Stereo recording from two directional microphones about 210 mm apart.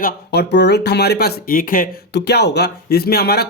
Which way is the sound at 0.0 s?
50° left (ahead or behind).